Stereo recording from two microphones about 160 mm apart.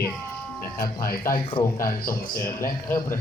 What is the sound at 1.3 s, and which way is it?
Speech, 20° left (ahead or behind).